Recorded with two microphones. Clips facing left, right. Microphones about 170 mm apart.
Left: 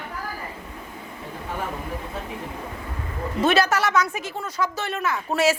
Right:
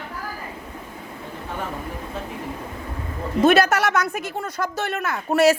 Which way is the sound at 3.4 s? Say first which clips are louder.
Right 4 dB; 55° right (ahead or behind).